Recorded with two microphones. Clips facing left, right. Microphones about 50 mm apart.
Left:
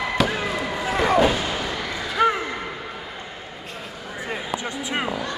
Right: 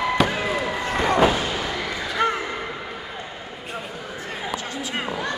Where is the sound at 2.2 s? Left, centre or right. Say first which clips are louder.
Left 3 dB; centre.